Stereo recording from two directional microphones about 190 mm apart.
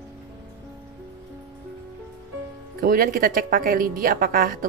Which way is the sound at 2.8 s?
50° right (ahead or behind).